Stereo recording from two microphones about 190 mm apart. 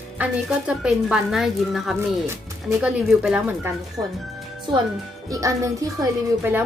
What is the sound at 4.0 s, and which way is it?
A woman's voice, 20° right (ahead or behind).